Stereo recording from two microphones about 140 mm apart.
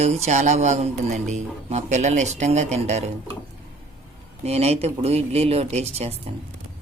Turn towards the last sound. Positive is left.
turn(degrees=-45)  # may be behind; listen again after turning